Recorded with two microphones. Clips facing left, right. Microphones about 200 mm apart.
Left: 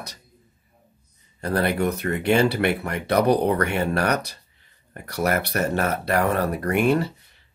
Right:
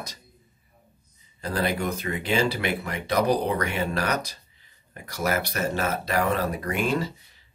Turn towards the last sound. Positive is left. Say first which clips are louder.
# left 6 dB
turn(degrees=60)  # may be behind; listen again after turning